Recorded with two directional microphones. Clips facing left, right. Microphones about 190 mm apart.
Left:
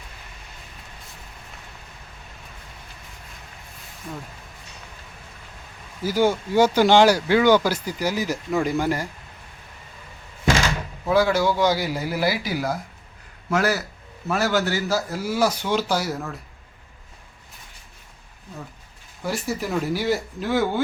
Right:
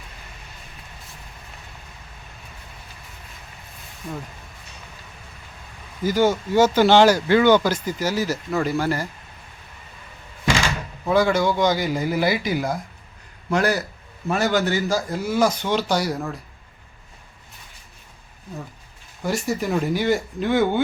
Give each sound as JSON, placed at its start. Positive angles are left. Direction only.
{"t": 6.0, "sound": "speech", "side_deg": 10}
{"t": 11.0, "sound": "a man's voice", "side_deg": 5}
{"t": 19.2, "sound": "a man's voice", "side_deg": 0}